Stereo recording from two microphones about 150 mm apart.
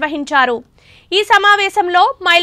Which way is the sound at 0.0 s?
Centre (ahead or behind).